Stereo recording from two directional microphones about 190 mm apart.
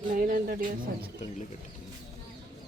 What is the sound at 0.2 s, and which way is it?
Speech, 45° right (ahead or behind).